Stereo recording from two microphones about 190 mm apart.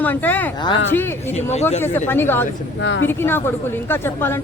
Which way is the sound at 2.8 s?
80° left.